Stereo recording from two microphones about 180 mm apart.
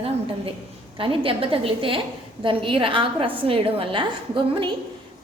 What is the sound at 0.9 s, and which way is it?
A woman's voice, 30° right (ahead or behind).